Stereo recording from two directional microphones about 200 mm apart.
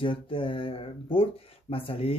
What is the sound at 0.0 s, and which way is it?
Speech, 25° left (ahead or behind).